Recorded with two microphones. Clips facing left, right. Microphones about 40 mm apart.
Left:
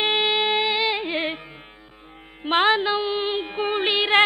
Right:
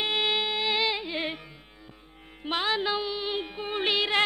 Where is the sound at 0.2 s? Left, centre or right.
Left.